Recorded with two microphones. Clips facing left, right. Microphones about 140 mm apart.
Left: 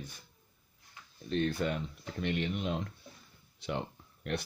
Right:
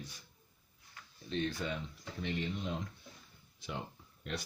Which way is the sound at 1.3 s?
55° left (ahead or behind).